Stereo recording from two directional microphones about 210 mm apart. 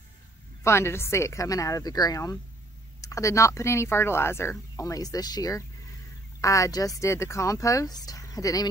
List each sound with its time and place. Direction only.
0.7 s speech: 10° left (ahead or behind)